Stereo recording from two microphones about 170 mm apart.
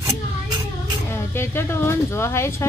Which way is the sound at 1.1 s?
15° left (ahead or behind).